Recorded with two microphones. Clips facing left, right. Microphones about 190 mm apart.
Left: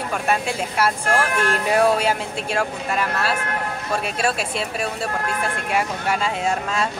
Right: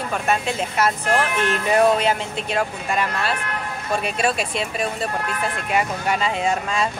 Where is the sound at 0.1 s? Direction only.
10° left (ahead or behind).